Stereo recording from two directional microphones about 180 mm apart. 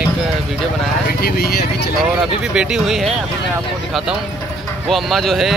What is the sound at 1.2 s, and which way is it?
Speech, 60° left (ahead or behind).